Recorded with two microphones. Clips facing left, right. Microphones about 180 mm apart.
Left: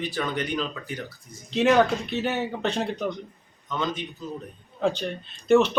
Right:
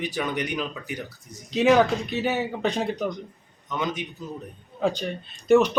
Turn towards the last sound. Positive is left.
turn(degrees=-10)  # may be behind; listen again after turning